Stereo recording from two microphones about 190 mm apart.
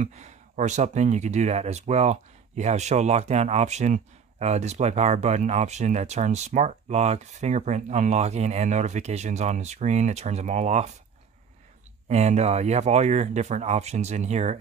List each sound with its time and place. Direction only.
0.0 s speech: 40° right (ahead or behind)
12.1 s speech: 35° right (ahead or behind)